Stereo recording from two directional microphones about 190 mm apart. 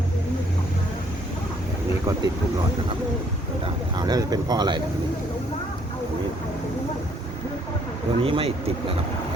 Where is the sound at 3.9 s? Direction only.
20° right (ahead or behind).